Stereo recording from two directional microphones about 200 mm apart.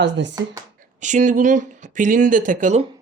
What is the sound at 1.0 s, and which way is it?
Speech, 35° right (ahead or behind).